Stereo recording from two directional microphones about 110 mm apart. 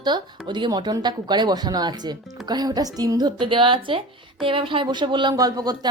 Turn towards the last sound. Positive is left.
turn(degrees=-35)  # may be behind; listen again after turning